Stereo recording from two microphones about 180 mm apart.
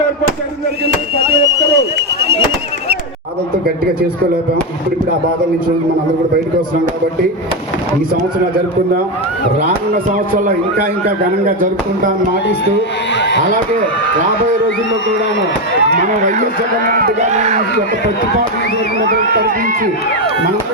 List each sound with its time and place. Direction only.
1.1 s speech: 65° right (ahead or behind)
9.6 s a man's voice: 45° right (ahead or behind)
13.1 s speech: 75° left (ahead or behind)
16.0 s a man's voice: 45° right (ahead or behind)